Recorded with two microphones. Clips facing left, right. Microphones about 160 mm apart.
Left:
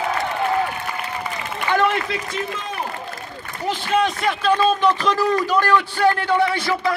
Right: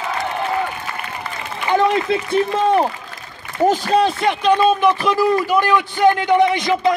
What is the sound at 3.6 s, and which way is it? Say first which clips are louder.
A man's voice: right 6 dB; 45° right (ahead or behind).